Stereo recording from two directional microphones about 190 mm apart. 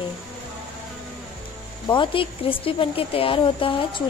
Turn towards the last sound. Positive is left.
turn(degrees=25)  # may be behind; listen again after turning